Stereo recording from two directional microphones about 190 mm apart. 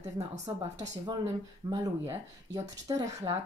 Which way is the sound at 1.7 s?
15° right (ahead or behind).